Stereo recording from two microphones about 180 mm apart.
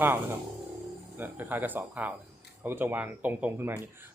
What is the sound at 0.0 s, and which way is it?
Speech, 10° right (ahead or behind).